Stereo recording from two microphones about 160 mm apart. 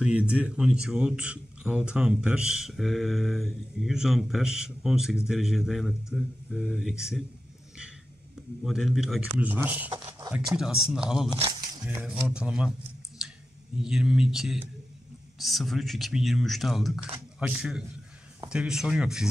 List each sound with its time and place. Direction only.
0.0 s a man's voice: 5° right (ahead or behind)
8.6 s a man's voice: centre (ahead or behind)
9.8 s speech: 25° right (ahead or behind)
10.5 s a man's voice: 5° right (ahead or behind)
11.2 s speech: 35° right (ahead or behind)
11.8 s a man's voice: 10° right (ahead or behind)
13.2 s clicking: 5° right (ahead or behind)
13.7 s a man's voice: 5° right (ahead or behind)